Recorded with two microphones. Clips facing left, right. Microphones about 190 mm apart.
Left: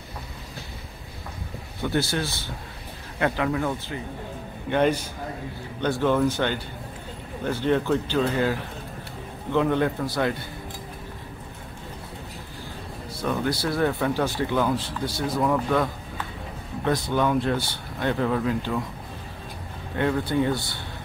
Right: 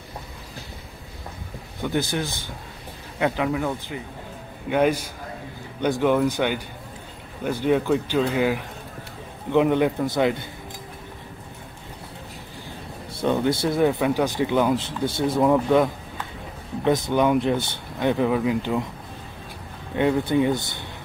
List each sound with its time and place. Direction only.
1.8 s speech: 15° right (ahead or behind)
13.2 s speech: 25° right (ahead or behind)
20.0 s speech: 15° right (ahead or behind)